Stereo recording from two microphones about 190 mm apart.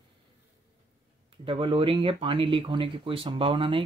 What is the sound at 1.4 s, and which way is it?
Speech, 30° right (ahead or behind).